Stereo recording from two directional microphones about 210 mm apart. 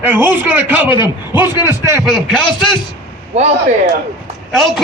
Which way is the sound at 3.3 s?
30° right (ahead or behind).